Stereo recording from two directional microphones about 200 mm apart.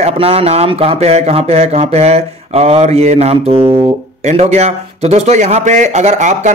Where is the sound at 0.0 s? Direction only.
30° right (ahead or behind).